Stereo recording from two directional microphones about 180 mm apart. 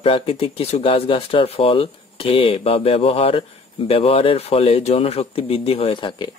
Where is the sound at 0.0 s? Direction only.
30° left (ahead or behind).